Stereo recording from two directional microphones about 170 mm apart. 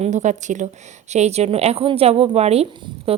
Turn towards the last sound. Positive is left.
turn(degrees=-35)  # may be behind; listen again after turning